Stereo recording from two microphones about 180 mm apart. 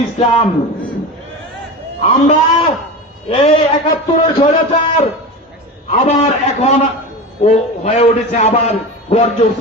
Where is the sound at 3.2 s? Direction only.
35° left (ahead or behind).